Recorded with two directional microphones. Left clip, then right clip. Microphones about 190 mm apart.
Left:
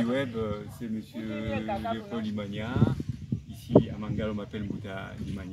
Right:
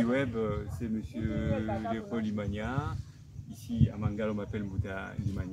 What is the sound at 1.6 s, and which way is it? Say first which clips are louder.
Speech: left 3 dB; 30° right (ahead or behind).